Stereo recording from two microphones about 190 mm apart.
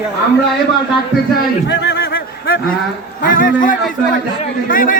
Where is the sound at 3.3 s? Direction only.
45° left (ahead or behind).